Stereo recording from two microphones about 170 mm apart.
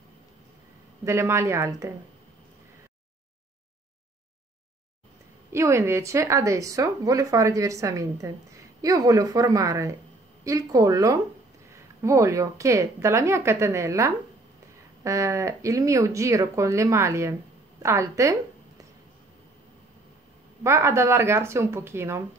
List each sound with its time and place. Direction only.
1.0 s speech: 15° right (ahead or behind)
5.5 s speech: 15° right (ahead or behind)
20.6 s speech: 15° right (ahead or behind)